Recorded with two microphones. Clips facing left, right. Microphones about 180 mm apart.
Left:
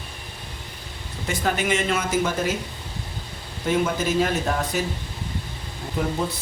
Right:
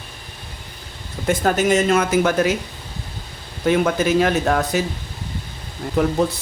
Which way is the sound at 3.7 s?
70° right (ahead or behind).